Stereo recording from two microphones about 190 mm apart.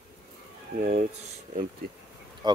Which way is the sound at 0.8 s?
45° right (ahead or behind).